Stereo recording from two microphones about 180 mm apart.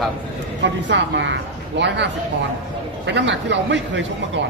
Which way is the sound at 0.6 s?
80° right.